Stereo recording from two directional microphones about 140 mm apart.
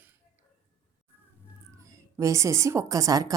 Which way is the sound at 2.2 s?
20° right (ahead or behind).